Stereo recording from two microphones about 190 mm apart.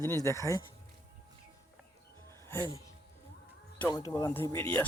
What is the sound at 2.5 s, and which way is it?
Speech, 20° right (ahead or behind).